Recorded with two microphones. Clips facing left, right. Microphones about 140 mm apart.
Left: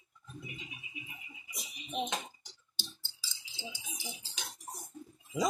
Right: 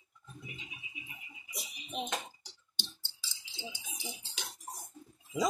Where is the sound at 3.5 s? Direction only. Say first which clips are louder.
Even; centre (ahead or behind).